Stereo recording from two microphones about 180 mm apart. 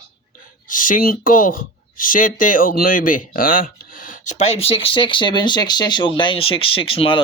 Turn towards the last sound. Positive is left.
turn(degrees=30)  # may be behind; listen again after turning